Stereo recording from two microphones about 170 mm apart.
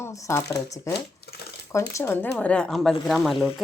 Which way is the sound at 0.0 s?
20° left (ahead or behind).